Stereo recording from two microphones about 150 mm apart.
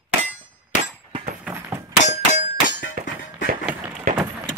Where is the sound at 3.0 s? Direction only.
70° right (ahead or behind).